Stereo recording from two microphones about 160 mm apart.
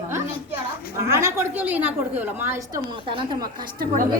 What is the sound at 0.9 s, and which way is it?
A woman's voice, 15° right (ahead or behind).